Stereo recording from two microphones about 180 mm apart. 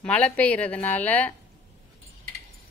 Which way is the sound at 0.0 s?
10° left (ahead or behind).